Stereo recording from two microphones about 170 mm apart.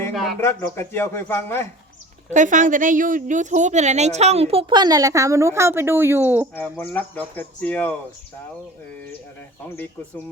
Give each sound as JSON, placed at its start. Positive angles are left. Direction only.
{"t": 0.1, "sound": "speech", "side_deg": 0}
{"t": 0.3, "sound": "speech", "side_deg": 15}
{"t": 2.3, "sound": "a woman's voice", "side_deg": -50}
{"t": 6.6, "sound": "speech", "side_deg": 10}
{"t": 9.6, "sound": "speech", "side_deg": 10}